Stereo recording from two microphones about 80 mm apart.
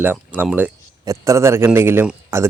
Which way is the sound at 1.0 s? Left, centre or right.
Right.